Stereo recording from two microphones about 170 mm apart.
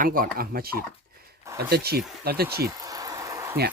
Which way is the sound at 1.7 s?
65° right (ahead or behind).